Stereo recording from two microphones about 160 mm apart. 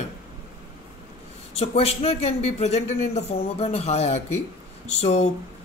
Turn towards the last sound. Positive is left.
turn(degrees=45)  # may be behind; listen again after turning